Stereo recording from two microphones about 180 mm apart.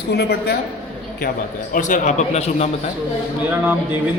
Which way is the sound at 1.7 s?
45° left (ahead or behind).